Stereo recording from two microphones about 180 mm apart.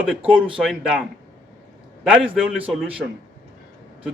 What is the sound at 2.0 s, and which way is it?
Speech, 5° right (ahead or behind).